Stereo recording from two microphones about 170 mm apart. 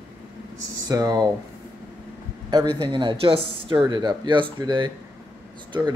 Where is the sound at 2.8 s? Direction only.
25° right (ahead or behind).